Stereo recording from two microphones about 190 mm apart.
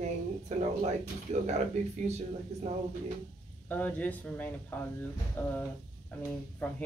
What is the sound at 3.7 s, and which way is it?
Speech, 10° left (ahead or behind).